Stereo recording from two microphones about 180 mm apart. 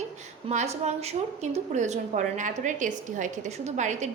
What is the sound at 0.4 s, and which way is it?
A woman's voice, 35° right (ahead or behind).